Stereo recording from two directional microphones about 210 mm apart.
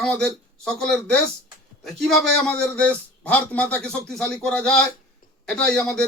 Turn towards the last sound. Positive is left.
turn(degrees=5)  # may be behind; listen again after turning